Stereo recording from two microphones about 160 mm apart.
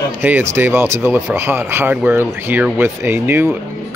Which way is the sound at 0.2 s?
15° right (ahead or behind).